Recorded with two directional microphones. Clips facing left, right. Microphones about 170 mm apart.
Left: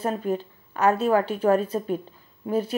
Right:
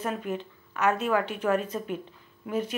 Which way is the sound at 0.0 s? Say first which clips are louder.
Left 5 dB; 35° left (ahead or behind).